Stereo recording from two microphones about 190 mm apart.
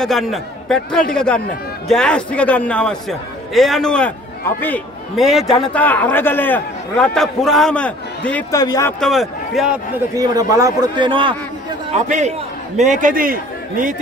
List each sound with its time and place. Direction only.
0.0 s a man's voice: centre (ahead or behind)
8.5 s speech: 20° left (ahead or behind)
9.0 s a man's voice: centre (ahead or behind)
10.1 s a man's voice: 20° right (ahead or behind)
11.9 s a man's voice: 35° right (ahead or behind)